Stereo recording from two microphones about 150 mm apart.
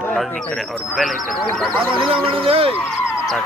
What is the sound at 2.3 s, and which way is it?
Speech, 35° right (ahead or behind).